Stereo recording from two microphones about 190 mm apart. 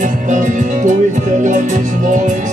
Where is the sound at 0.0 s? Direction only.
40° right (ahead or behind).